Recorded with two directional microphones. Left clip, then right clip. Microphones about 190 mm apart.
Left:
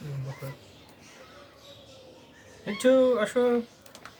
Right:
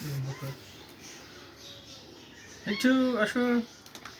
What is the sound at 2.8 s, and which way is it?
Speech, 25° left (ahead or behind).